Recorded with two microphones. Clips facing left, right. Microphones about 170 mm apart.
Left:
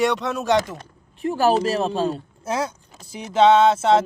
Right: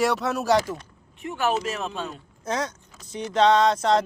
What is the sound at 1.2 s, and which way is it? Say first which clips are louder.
Music: left 7 dB; 35° left (ahead or behind).